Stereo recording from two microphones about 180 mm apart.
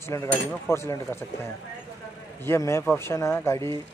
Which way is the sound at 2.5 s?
15° left (ahead or behind).